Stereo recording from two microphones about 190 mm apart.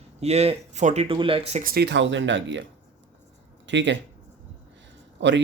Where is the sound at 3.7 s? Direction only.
70° right (ahead or behind).